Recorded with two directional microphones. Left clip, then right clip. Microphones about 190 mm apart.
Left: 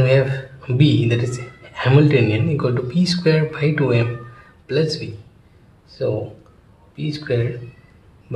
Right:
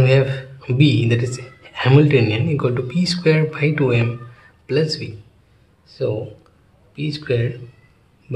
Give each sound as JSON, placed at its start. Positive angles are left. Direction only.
{"t": 0.0, "sound": "speech", "side_deg": -25}
{"t": 7.0, "sound": "speech", "side_deg": -25}